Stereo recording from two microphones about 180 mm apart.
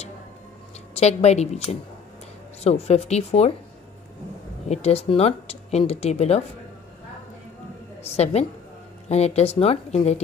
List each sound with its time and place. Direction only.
0.9 s speech: 35° left (ahead or behind)
2.6 s speech: 35° left (ahead or behind)
4.6 s speech: 35° left (ahead or behind)
8.0 s speech: 35° left (ahead or behind)